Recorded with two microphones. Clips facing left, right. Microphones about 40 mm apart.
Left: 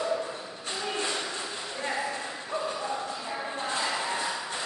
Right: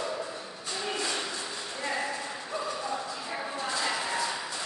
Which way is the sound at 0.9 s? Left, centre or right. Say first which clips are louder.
Left 1 dB; left.